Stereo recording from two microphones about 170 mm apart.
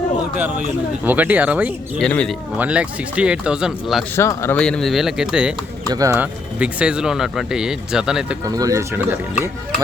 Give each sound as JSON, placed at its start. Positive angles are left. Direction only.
{"t": 0.3, "sound": "speech", "side_deg": -10}
{"t": 2.0, "sound": "speech", "side_deg": 5}
{"t": 2.6, "sound": "speech", "side_deg": -5}
{"t": 4.1, "sound": "speech", "side_deg": 15}
{"t": 5.9, "sound": "speech", "side_deg": -20}
{"t": 6.1, "sound": "speech", "side_deg": -5}
{"t": 8.4, "sound": "speech", "side_deg": -20}